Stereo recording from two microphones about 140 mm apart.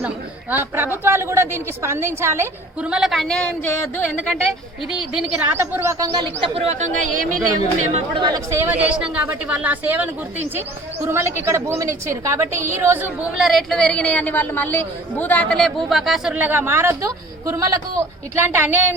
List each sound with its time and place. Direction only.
0.5 s speech: 15° right (ahead or behind)
2.8 s speech: 5° right (ahead or behind)
5.5 s a woman's voice: 20° right (ahead or behind)
6.5 s speech: 45° right (ahead or behind); by 7.3 s 65° right (ahead or behind)
8.4 s a woman's voice: 15° right (ahead or behind)
13.3 s speech: centre (ahead or behind)